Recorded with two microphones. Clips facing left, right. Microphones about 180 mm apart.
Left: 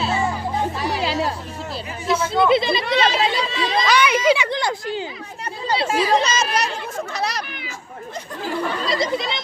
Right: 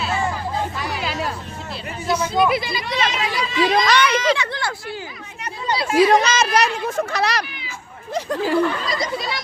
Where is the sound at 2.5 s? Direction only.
25° left (ahead or behind).